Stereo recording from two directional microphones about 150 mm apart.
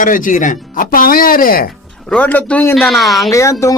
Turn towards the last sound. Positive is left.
turn(degrees=20)  # may be behind; listen again after turning